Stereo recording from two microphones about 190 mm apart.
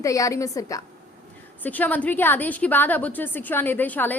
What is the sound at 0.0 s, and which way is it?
A woman's voice, 15° left (ahead or behind).